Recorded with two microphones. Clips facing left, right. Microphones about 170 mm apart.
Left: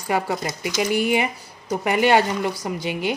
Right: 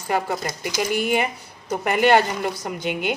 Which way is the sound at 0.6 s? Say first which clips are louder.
Left 2 dB; 45° right (ahead or behind).